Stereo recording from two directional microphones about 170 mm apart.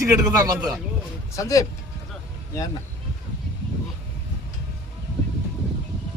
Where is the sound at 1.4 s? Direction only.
20° left (ahead or behind).